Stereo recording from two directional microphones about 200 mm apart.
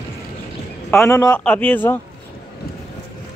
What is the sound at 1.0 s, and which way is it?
Speech, 15° left (ahead or behind).